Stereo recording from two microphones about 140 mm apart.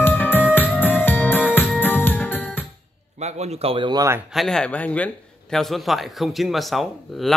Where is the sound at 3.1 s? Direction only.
55° right (ahead or behind); by 4.1 s 35° right (ahead or behind).